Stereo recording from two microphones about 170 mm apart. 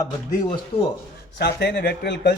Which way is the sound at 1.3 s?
70° left (ahead or behind).